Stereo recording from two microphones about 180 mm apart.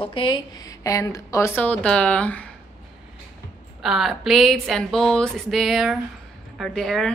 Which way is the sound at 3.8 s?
Centre (ahead or behind).